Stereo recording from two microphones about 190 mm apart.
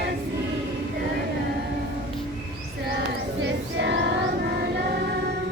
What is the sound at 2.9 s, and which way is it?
Chant, 65° right (ahead or behind).